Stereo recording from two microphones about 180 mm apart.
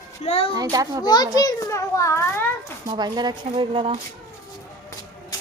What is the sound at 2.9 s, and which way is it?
A woman's voice, 25° right (ahead or behind).